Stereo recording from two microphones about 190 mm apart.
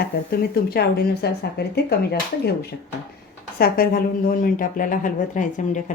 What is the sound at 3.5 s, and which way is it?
Speech, 50° left (ahead or behind).